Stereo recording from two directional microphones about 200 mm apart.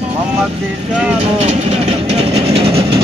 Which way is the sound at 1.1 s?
30° right (ahead or behind).